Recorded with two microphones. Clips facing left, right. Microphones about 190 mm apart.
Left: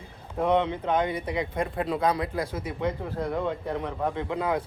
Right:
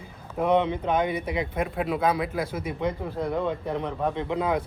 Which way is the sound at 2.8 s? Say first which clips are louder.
Even; 15° right (ahead or behind).